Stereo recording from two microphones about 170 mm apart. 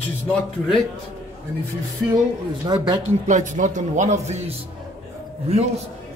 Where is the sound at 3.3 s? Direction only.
45° right (ahead or behind).